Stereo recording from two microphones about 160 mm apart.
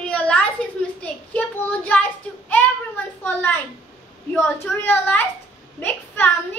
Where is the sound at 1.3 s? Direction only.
10° left (ahead or behind).